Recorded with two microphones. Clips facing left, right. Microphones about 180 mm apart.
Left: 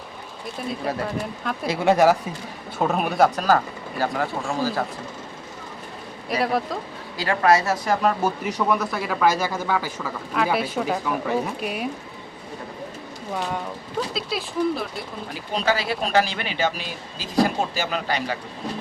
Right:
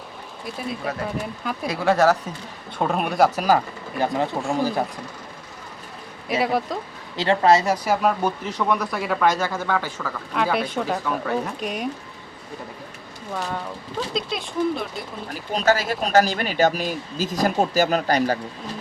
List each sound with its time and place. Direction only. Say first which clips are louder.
0.9 s speech: left 2 dB; 30° left (ahead or behind); by 2.1 s 15° left (ahead or behind)
2.7 s speech: even; centre (ahead or behind); by 4.9 s 20° right (ahead or behind)
6.2 s speech: right 1 dB; centre (ahead or behind)
7.2 s a woman's voice: right 2 dB; 20° right (ahead or behind)
8.2 s speech: left 1 dB; 10° left (ahead or behind)
14.1 s speech: right 1 dB; 5° left (ahead or behind)
15.5 s speech: right 3 dB; 45° right (ahead or behind)